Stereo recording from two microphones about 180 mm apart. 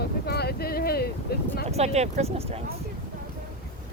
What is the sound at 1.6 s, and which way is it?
Speech, 35° right (ahead or behind).